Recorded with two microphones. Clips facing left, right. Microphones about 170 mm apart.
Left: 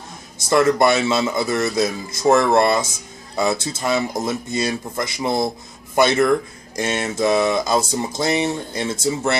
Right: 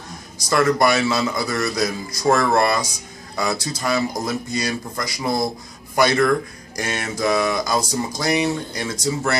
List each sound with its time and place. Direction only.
0.5 s speech: 25° left (ahead or behind)